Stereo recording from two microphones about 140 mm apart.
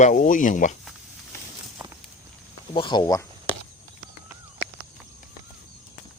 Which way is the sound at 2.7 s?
35° left (ahead or behind).